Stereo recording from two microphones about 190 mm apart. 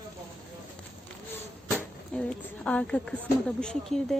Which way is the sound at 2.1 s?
5° left (ahead or behind).